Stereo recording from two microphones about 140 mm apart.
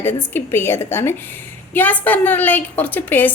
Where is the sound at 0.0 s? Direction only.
15° left (ahead or behind).